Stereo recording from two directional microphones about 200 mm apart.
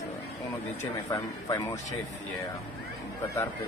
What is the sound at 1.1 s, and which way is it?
Speech, 15° left (ahead or behind).